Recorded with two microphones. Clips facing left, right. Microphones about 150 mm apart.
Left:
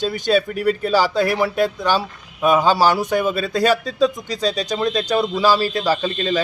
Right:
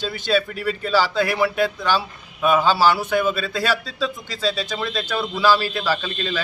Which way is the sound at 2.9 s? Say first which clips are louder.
Left 1 dB; 15° left (ahead or behind).